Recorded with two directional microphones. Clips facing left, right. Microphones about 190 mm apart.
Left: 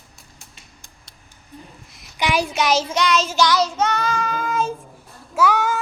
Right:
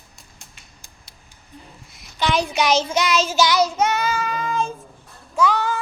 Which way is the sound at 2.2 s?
10° left (ahead or behind).